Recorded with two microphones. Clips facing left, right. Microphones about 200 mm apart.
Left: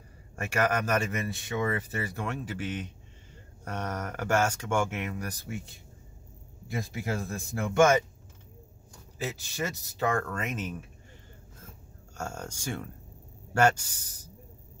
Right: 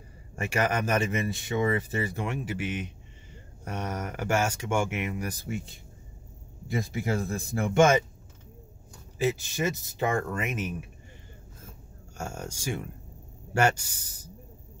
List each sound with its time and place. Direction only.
0.5 s speech: 20° right (ahead or behind)
6.7 s speech: 25° right (ahead or behind)
9.2 s speech: 20° right (ahead or behind)
12.2 s speech: 10° right (ahead or behind)